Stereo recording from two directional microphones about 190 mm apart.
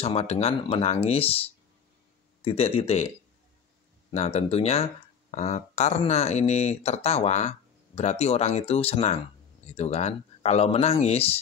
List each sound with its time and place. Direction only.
0.0 s speech: 30° left (ahead or behind)
2.4 s speech: 30° left (ahead or behind)
4.1 s speech: 35° left (ahead or behind)